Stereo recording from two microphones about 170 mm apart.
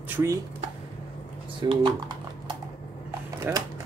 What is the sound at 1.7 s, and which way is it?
Speech, 30° right (ahead or behind).